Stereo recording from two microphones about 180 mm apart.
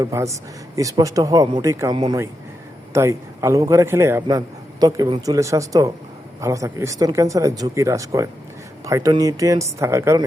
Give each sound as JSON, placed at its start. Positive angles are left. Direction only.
{"t": 0.0, "sound": "a man's voice", "side_deg": -15}